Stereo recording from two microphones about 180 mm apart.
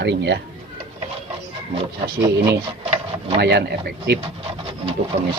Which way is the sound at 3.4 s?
65° right (ahead or behind).